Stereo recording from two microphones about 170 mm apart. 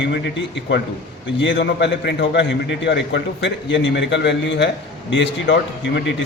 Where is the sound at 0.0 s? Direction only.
90° left.